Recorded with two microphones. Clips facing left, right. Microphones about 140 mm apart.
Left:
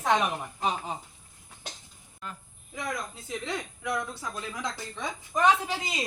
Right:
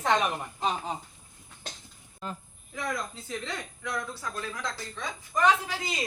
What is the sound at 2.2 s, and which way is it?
Speech, 30° right (ahead or behind).